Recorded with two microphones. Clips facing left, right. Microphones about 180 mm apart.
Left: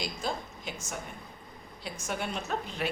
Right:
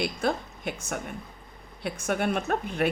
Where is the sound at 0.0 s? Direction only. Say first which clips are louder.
Right 7 dB; 60° right (ahead or behind).